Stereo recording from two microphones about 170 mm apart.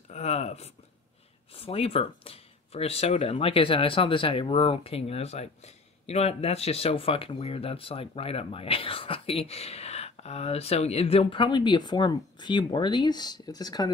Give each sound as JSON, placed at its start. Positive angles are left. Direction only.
{"t": 0.1, "sound": "speech", "side_deg": 40}